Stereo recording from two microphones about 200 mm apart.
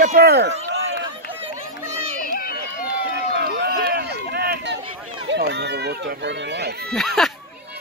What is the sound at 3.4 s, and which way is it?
Run, 50° right (ahead or behind).